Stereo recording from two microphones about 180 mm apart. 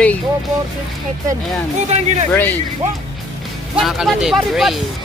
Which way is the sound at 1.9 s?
40° right (ahead or behind).